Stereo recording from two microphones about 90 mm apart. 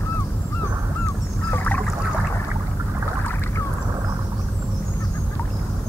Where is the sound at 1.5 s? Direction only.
20° left (ahead or behind).